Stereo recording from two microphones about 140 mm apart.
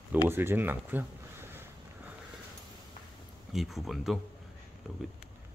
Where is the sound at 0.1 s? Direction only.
15° right (ahead or behind).